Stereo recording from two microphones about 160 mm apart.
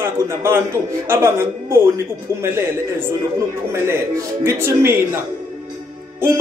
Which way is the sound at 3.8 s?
15° right (ahead or behind).